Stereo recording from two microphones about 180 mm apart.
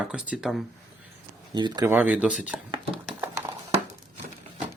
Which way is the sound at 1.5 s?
25° right (ahead or behind).